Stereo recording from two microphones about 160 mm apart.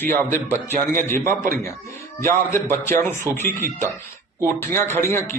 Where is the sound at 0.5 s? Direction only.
50° right (ahead or behind).